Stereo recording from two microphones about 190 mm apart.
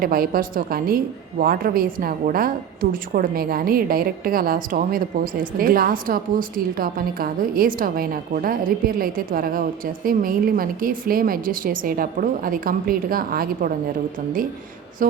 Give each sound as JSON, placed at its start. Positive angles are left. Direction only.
{"t": 0.0, "sound": "a woman's voice", "side_deg": -50}